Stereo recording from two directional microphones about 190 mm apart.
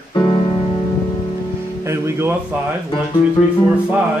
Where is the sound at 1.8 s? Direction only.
15° right (ahead or behind).